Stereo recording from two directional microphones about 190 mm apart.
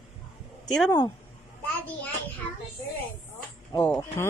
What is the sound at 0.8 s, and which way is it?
Speech, 20° left (ahead or behind).